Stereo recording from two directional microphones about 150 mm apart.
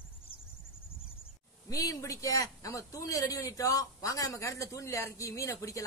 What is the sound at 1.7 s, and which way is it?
A man's voice, 25° left (ahead or behind).